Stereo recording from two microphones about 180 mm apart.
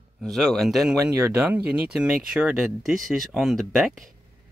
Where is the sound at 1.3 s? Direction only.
10° right (ahead or behind).